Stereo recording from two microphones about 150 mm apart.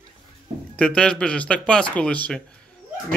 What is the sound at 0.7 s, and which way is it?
Speech, 5° left (ahead or behind).